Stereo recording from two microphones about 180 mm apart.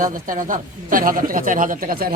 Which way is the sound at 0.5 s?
50° right (ahead or behind).